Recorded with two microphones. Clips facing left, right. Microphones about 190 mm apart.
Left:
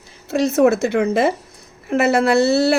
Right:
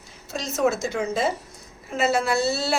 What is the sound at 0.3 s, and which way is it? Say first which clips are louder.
A woman's voice: left 9 dB; 60° left (ahead or behind).